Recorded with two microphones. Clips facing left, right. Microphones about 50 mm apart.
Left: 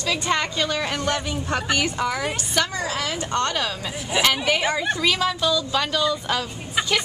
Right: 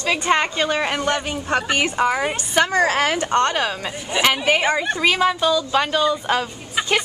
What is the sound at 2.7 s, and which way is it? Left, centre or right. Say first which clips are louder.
Speech: right 8 dB; right.